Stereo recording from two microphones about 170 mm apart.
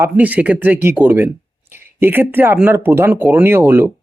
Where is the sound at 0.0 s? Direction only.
10° right (ahead or behind).